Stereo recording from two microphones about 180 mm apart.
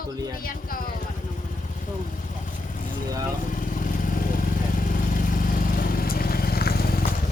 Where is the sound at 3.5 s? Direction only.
50° left (ahead or behind).